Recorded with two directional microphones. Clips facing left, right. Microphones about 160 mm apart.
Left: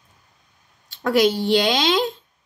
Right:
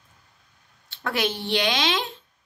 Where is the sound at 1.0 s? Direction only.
35° left (ahead or behind).